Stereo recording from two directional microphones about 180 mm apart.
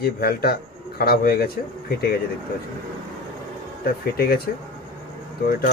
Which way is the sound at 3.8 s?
55° left (ahead or behind).